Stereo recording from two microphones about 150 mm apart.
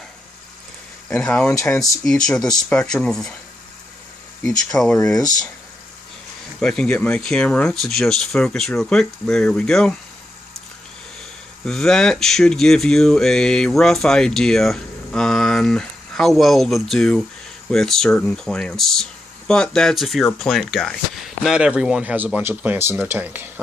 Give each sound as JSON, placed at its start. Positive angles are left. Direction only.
{"t": 1.1, "sound": "speech", "side_deg": 5}
{"t": 1.5, "sound": "speech", "side_deg": 20}
{"t": 2.0, "sound": "speech", "side_deg": 5}
{"t": 4.4, "sound": "speech", "side_deg": 5}
{"t": 6.6, "sound": "speech", "side_deg": 5}
{"t": 11.6, "sound": "speech", "side_deg": 5}